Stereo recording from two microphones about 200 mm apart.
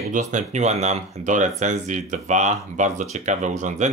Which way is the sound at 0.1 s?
35° right (ahead or behind).